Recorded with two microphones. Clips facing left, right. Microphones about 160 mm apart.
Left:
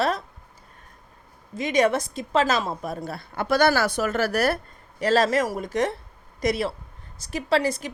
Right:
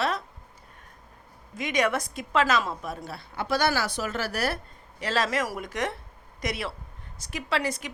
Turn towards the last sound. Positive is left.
turn(degrees=35)  # may be behind; listen again after turning